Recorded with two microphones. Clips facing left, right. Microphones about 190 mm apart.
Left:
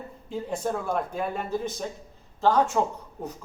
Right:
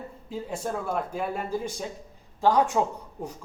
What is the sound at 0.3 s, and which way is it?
A man's voice, 5° right (ahead or behind).